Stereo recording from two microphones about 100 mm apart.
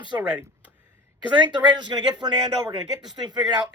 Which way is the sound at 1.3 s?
50° right (ahead or behind).